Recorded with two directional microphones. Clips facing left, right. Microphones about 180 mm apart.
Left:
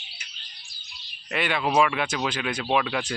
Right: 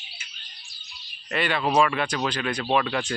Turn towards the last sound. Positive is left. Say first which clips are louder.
# right 1 dB
turn(degrees=5)  # may be behind; listen again after turning